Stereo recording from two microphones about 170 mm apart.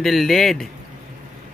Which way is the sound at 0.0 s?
Centre (ahead or behind).